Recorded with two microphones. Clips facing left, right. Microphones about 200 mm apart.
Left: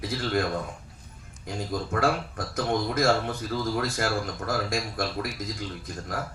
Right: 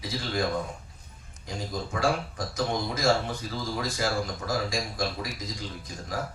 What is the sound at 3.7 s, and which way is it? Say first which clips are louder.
A man's voice: left 1 dB; 55° left (ahead or behind).